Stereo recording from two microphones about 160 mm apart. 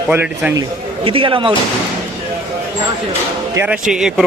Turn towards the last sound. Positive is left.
turn(degrees=-5)  # may be behind; listen again after turning